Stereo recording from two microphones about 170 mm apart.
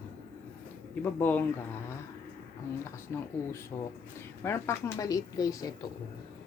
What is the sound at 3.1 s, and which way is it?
Speech, 15° left (ahead or behind).